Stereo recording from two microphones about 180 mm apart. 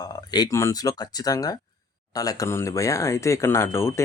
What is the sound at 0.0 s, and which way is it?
Speech, 20° left (ahead or behind).